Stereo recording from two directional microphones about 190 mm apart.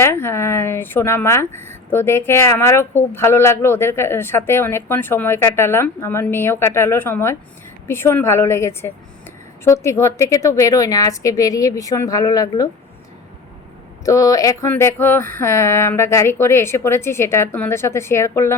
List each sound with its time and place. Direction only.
0.0 s speech: 15° left (ahead or behind)
14.0 s speech: 15° left (ahead or behind)